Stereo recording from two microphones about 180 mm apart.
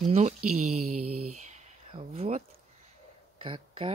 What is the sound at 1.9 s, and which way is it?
Speech, 35° right (ahead or behind).